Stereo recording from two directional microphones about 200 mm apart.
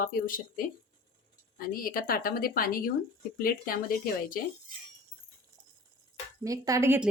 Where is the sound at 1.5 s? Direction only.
45° left (ahead or behind).